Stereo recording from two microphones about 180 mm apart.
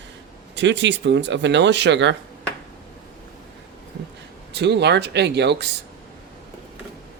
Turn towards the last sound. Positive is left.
turn(degrees=-70)  # may be behind; listen again after turning